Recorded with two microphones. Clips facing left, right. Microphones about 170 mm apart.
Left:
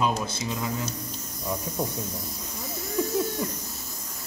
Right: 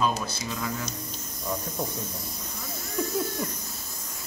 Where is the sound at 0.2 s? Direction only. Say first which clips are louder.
Left 2 dB; 20° left (ahead or behind).